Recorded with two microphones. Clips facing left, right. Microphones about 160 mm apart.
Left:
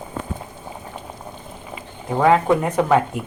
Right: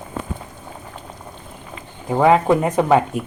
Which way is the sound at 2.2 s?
20° right (ahead or behind).